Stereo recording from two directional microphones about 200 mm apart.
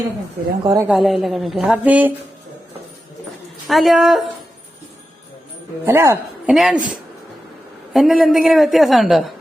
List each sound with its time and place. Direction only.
0.6 s speech: 20° right (ahead or behind)
0.9 s a woman's voice: centre (ahead or behind)
3.7 s a woman's voice: centre (ahead or behind)
5.8 s speech: 15° right (ahead or behind)
6.5 s a woman's voice: centre (ahead or behind)
7.9 s a woman's voice: centre (ahead or behind)